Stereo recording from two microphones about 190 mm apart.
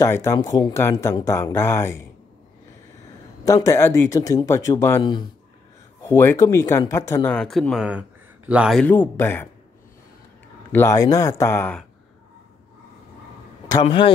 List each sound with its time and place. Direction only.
0.0 s speech: 15° left (ahead or behind)
3.4 s speech: 15° left (ahead or behind)
7.3 s speech: centre (ahead or behind)
8.8 s speech: 10° left (ahead or behind)
10.7 s speech: 15° left (ahead or behind)
13.7 s speech: 25° left (ahead or behind)